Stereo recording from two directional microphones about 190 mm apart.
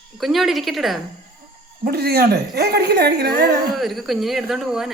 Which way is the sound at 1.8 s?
55° right (ahead or behind).